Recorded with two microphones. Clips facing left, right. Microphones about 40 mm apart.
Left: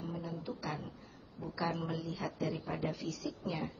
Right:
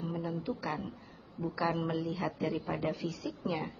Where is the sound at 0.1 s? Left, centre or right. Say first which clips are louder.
Right 5 dB; centre.